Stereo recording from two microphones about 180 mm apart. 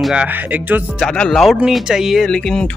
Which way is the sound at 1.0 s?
5° left (ahead or behind).